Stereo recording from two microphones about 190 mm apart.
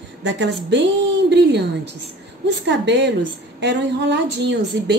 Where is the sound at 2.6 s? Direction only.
65° right (ahead or behind).